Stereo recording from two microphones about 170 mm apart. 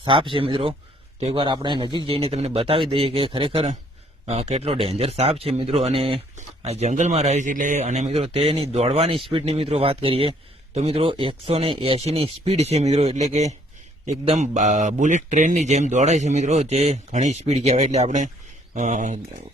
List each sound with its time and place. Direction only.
0.0 s a man's voice: 30° right (ahead or behind); by 19.2 s 45° right (ahead or behind)